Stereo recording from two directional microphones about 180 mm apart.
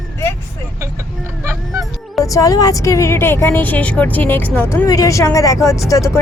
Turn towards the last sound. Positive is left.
turn(degrees=15)  # may be behind; listen again after turning